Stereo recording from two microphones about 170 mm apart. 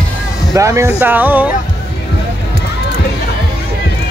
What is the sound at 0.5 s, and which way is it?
Speech, 20° right (ahead or behind).